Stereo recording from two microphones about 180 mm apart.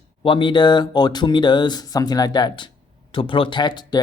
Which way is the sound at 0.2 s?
30° left (ahead or behind).